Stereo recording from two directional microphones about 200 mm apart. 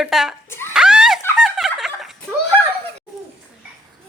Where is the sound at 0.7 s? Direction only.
5° right (ahead or behind).